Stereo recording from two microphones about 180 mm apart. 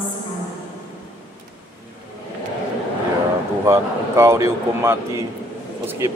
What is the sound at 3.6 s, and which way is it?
Speech, 15° right (ahead or behind).